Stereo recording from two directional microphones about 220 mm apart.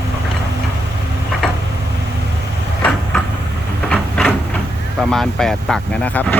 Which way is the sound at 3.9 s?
5° left (ahead or behind).